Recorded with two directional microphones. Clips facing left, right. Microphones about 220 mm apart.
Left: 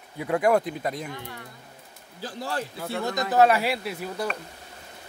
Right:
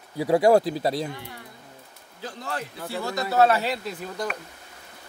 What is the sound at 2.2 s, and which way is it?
Speech, 30° left (ahead or behind).